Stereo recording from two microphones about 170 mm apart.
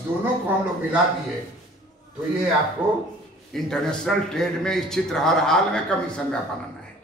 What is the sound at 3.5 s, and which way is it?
A man's voice, centre (ahead or behind).